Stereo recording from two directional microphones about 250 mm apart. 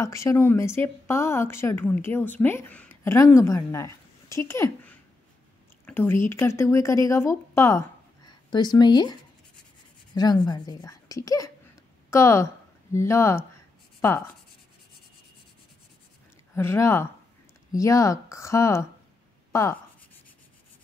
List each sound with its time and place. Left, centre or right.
0.0 s speech: centre
10.1 s speech: centre
16.5 s speech: centre